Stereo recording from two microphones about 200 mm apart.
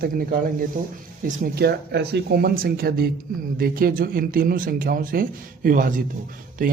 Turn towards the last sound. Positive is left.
turn(degrees=-45)  # may be behind; listen again after turning